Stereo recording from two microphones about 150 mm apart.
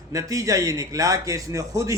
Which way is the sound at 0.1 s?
20° right (ahead or behind).